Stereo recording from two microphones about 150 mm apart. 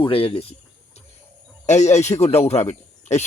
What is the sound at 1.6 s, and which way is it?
Speech, 50° left (ahead or behind).